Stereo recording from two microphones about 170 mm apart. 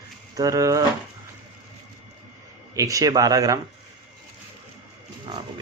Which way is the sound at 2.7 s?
20° right (ahead or behind).